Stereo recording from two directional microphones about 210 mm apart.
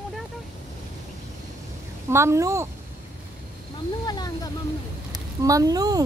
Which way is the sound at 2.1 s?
15° right (ahead or behind).